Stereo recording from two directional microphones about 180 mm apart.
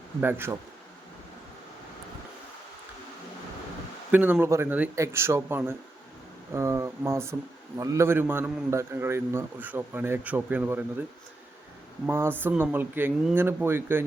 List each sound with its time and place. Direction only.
0.2 s a man's voice: 10° right (ahead or behind)
4.1 s a man's voice: 10° right (ahead or behind)
12.0 s a man's voice: 15° right (ahead or behind)